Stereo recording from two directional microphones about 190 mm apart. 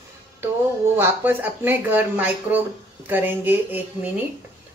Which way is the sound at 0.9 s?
10° right (ahead or behind).